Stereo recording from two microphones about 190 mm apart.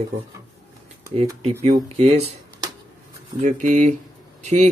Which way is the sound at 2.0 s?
35° right (ahead or behind).